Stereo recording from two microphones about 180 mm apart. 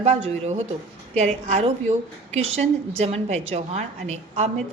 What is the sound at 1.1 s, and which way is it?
A woman's voice, 40° right (ahead or behind).